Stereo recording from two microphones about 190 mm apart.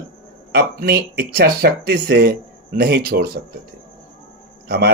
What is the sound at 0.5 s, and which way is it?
Speech, 55° right (ahead or behind).